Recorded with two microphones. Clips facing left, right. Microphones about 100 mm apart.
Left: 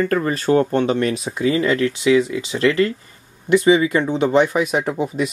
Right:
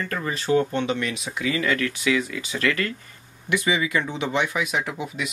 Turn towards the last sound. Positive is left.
turn(degrees=40)  # may be behind; listen again after turning